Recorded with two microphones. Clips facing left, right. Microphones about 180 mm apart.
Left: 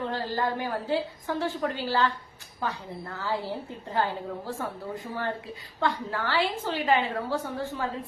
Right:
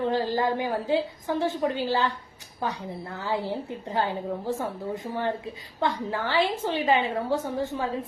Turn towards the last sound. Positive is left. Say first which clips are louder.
# right 3 dB
turn(degrees=-20)  # may be behind; listen again after turning